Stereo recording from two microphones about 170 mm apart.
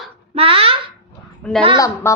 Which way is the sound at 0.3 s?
30° right (ahead or behind).